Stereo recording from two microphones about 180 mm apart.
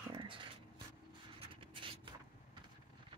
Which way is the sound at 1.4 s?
30° right (ahead or behind).